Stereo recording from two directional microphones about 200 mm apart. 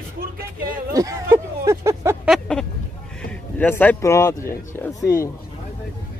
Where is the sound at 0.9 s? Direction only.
15° right (ahead or behind).